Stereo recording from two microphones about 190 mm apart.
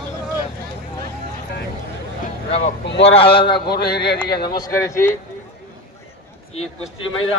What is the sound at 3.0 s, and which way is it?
Speech, 30° left (ahead or behind).